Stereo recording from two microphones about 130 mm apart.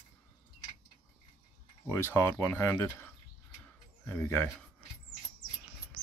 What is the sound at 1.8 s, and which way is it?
Speech, 15° left (ahead or behind).